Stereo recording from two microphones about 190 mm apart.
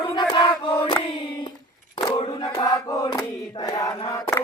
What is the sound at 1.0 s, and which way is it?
Hands, 25° left (ahead or behind).